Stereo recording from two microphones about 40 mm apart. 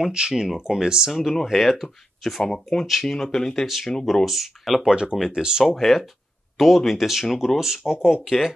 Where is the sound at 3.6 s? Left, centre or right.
Centre.